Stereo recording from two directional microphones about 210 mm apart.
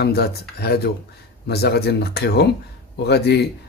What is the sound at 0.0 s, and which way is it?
A man's voice, 50° left (ahead or behind).